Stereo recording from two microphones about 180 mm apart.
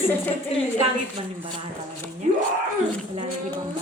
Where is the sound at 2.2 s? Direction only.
40° right (ahead or behind).